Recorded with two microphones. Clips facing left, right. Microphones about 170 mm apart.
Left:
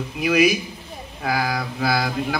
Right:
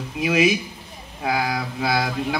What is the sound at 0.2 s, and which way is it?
Speech, 25° right (ahead or behind).